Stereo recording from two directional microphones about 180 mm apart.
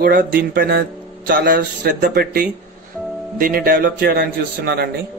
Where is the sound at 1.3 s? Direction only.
70° right (ahead or behind).